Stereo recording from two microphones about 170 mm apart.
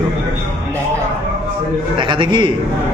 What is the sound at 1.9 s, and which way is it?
Speech, 30° right (ahead or behind).